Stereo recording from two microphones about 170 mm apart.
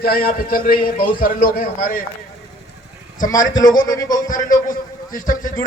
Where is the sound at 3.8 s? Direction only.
20° left (ahead or behind).